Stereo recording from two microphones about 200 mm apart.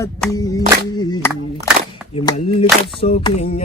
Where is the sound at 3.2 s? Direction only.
30° left (ahead or behind).